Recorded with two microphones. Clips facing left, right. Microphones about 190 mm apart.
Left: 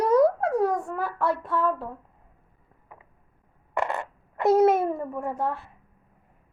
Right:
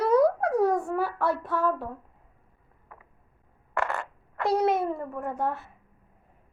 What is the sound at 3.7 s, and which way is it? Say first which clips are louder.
Fart: left 2 dB; 20° left (ahead or behind).